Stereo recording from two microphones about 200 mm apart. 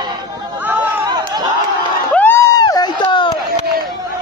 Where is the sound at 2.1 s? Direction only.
10° left (ahead or behind).